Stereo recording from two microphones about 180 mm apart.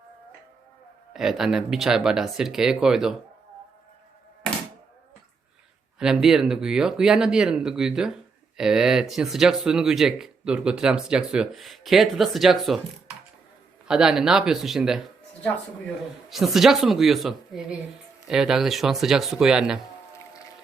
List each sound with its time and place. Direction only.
1.1 s speech: centre (ahead or behind)
6.0 s speech: 5° right (ahead or behind)
13.8 s speech: 5° right (ahead or behind)
16.3 s speech: centre (ahead or behind)
20.1 s music: 20° left (ahead or behind)